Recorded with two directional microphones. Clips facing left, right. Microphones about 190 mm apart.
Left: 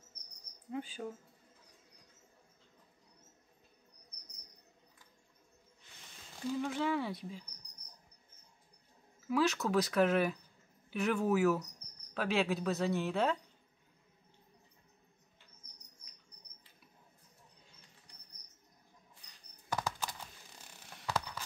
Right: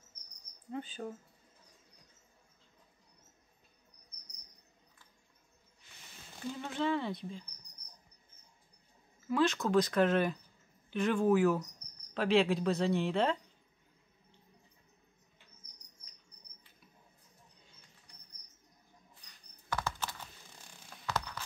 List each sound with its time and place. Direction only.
0.7 s speech: 10° left (ahead or behind)
6.6 s speech: 5° left (ahead or behind)
9.3 s speech: 5° left (ahead or behind)
19.7 s computer keyboard: 15° left (ahead or behind)
21.0 s a sound: 10° left (ahead or behind)